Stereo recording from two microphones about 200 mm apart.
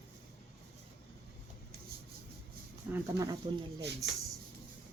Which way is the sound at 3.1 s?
60° right (ahead or behind).